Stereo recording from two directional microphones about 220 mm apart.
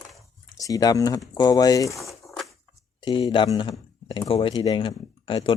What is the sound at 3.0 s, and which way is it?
Speech, 20° left (ahead or behind).